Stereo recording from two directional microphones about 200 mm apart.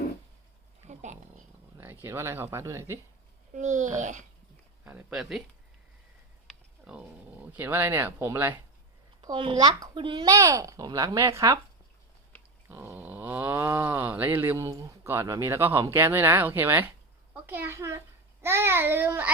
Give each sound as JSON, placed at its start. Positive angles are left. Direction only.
{"t": 0.9, "sound": "a sound", "side_deg": -35}
{"t": 1.8, "sound": "speech", "side_deg": -10}
{"t": 3.5, "sound": "a child's voice", "side_deg": -40}
{"t": 4.9, "sound": "speech", "side_deg": -5}
{"t": 6.5, "sound": "a sound", "side_deg": -5}
{"t": 7.4, "sound": "speech", "side_deg": -10}
{"t": 9.2, "sound": "speech", "side_deg": -25}
{"t": 12.6, "sound": "speech", "side_deg": -10}